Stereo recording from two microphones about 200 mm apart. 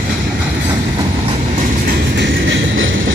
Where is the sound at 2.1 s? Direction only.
65° right (ahead or behind).